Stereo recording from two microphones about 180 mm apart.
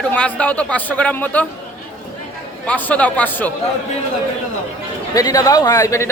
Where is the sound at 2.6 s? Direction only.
10° left (ahead or behind).